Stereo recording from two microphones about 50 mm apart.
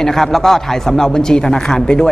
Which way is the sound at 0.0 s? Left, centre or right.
Centre.